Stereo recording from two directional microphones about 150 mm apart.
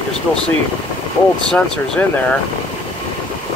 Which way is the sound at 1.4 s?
5° left (ahead or behind).